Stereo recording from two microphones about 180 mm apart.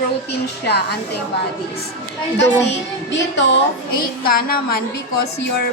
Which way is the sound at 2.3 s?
85° left.